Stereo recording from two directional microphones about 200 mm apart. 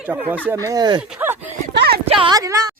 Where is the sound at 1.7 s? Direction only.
55° right (ahead or behind).